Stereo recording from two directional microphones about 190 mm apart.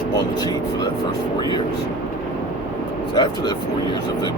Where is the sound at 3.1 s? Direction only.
20° left (ahead or behind).